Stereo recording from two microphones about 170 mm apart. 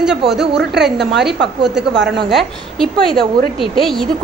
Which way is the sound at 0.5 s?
80° right.